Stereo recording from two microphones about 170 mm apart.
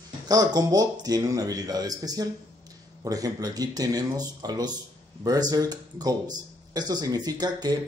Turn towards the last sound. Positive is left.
turn(degrees=-25)  # may be behind; listen again after turning